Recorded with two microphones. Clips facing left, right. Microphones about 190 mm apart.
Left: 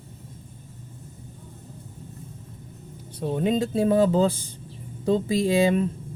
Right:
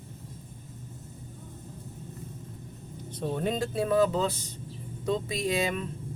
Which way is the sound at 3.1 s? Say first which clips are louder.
Left 6 dB; 15° left (ahead or behind).